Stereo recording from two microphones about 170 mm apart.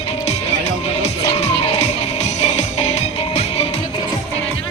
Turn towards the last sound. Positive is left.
turn(degrees=40)  # may be behind; listen again after turning